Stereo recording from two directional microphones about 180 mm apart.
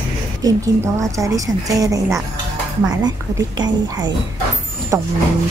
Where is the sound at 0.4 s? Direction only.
20° right (ahead or behind).